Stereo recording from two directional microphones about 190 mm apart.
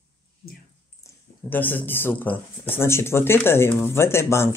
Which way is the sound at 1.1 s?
10° left (ahead or behind).